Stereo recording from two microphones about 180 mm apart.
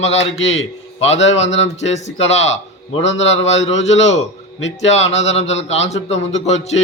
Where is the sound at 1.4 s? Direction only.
90° left.